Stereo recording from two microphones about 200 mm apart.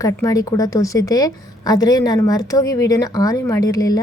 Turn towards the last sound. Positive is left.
turn(degrees=20)  # may be behind; listen again after turning